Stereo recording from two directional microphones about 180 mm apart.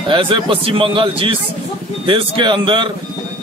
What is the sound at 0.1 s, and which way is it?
A man's voice, 30° right (ahead or behind).